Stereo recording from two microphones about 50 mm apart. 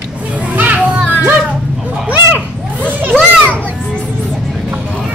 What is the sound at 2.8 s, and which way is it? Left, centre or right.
Children playing, right.